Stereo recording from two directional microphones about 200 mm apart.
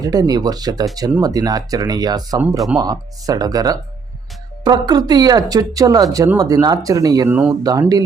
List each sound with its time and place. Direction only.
0.0 s speech: 20° right (ahead or behind)